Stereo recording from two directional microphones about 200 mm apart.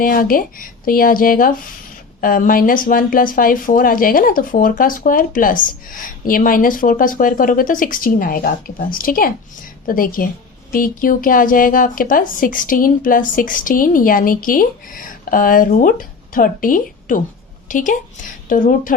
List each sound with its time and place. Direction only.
0.0 s a woman's voice: 45° left (ahead or behind)